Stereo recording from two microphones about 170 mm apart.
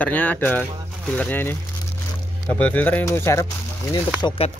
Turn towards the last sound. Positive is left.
turn(degrees=30)  # may be behind; listen again after turning